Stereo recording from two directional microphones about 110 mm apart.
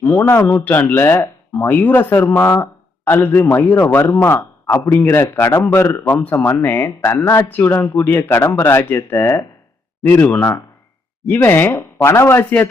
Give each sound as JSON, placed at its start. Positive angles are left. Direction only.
{"t": 0.0, "sound": "a man's voice", "side_deg": 15}